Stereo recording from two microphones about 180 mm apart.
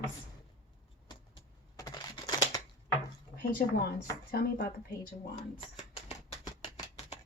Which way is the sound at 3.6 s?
55° left (ahead or behind).